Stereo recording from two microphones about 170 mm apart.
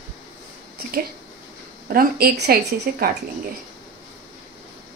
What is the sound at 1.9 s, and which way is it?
A woman's voice, 60° right (ahead or behind).